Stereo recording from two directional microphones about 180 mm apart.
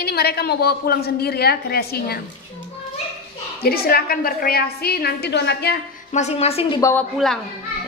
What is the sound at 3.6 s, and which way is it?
A woman's voice, 60° left (ahead or behind).